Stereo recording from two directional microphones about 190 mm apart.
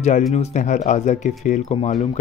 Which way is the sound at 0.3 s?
35° left (ahead or behind).